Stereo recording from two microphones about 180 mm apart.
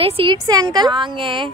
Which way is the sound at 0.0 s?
30° right (ahead or behind).